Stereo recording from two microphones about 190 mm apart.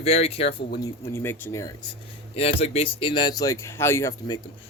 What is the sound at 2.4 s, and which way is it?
Speech, 30° left (ahead or behind).